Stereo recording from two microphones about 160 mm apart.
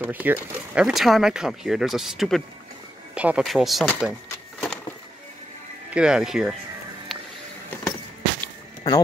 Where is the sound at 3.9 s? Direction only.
Centre (ahead or behind).